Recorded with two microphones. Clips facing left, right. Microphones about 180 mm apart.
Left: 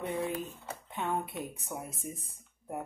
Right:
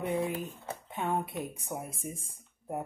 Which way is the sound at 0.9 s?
15° right (ahead or behind).